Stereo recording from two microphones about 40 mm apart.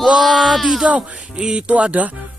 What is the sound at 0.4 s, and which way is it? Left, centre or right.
Speech, centre.